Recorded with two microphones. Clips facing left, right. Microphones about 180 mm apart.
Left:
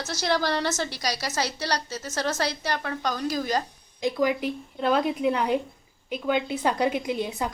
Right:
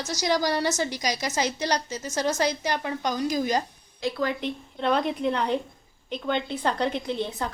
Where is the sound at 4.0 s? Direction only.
15° left (ahead or behind).